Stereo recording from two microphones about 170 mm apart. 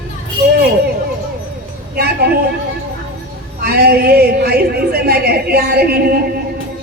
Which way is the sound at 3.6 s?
65° right (ahead or behind).